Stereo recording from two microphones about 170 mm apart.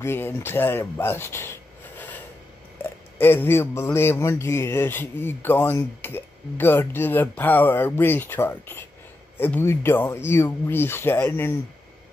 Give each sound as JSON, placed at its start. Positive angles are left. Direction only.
{"t": 0.0, "sound": "speech", "side_deg": 15}